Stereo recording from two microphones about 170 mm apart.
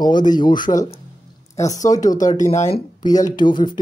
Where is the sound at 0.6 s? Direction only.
50° left (ahead or behind).